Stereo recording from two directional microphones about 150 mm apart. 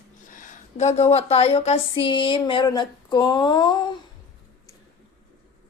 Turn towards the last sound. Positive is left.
turn(degrees=25)  # may be behind; listen again after turning